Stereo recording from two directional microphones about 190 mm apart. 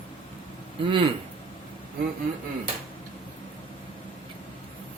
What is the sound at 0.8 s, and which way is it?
Speech, 25° right (ahead or behind).